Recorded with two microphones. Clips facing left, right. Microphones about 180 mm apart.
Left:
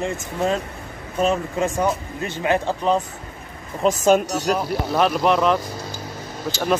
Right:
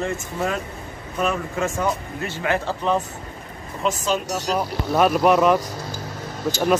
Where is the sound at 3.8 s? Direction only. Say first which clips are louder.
Left 7 dB; 45° left (ahead or behind).